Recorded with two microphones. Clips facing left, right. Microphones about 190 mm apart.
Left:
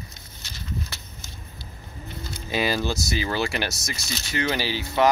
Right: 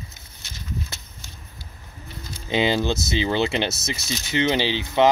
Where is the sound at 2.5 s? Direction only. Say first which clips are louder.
Right 4 dB; 20° right (ahead or behind).